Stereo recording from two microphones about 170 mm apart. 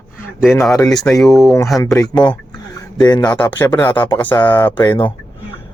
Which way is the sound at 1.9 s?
25° left (ahead or behind).